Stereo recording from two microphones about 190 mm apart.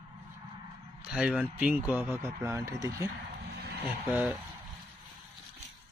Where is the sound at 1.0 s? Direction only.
5° right (ahead or behind).